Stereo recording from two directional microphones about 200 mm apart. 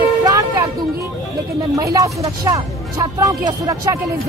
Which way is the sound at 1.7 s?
15° right (ahead or behind).